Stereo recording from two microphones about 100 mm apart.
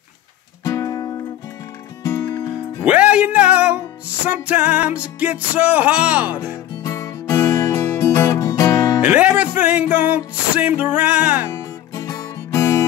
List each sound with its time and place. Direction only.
0.7 s music: 30° left (ahead or behind)
2.8 s music: 15° right (ahead or behind)
6.5 s music: 30° left (ahead or behind)
9.0 s music: 15° right (ahead or behind)
11.5 s guitar: 30° left (ahead or behind)